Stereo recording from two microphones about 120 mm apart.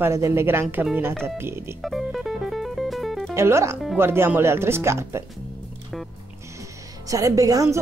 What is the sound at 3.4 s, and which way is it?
Speech, 25° right (ahead or behind).